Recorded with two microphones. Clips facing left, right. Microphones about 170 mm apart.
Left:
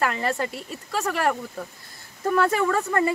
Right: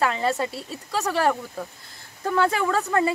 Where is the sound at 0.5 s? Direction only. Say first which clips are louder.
Even; 30° right (ahead or behind).